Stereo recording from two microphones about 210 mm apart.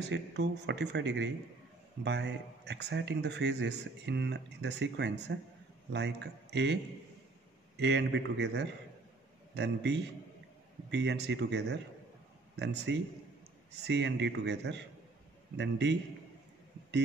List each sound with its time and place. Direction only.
0.1 s a man's voice: 55° right (ahead or behind)